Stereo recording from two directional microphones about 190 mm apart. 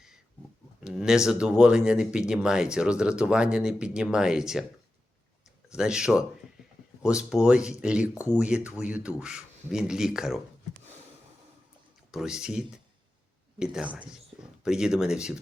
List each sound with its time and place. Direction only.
0.9 s speech: 5° right (ahead or behind)
5.6 s speech: 5° right (ahead or behind)
12.1 s speech: 5° right (ahead or behind)